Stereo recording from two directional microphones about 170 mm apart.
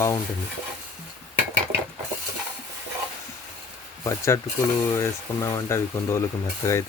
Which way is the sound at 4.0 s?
20° left (ahead or behind).